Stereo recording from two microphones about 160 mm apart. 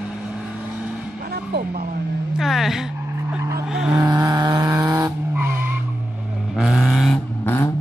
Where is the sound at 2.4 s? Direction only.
Centre (ahead or behind).